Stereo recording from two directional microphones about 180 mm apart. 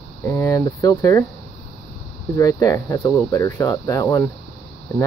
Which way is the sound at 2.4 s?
20° left (ahead or behind).